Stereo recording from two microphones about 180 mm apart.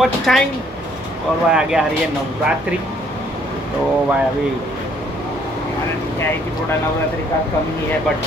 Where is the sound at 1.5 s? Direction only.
5° right (ahead or behind).